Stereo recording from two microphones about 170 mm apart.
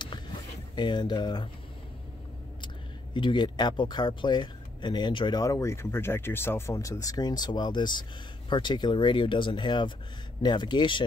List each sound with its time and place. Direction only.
0.7 s speech: 25° left (ahead or behind)
3.2 s speech: 25° left (ahead or behind)